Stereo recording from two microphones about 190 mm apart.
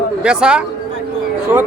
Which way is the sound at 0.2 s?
5° right (ahead or behind).